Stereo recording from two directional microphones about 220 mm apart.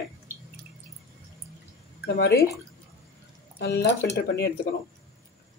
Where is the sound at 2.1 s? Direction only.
45° left (ahead or behind).